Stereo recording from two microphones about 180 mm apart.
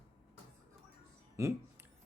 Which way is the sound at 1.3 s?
15° right (ahead or behind).